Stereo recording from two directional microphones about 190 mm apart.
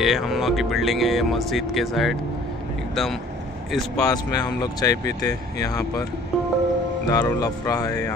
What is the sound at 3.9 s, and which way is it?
Speech, 20° left (ahead or behind).